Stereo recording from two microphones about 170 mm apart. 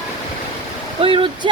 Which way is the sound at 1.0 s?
30° right (ahead or behind).